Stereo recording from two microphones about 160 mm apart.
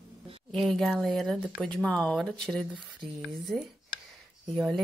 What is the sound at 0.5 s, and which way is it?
Speech, centre (ahead or behind).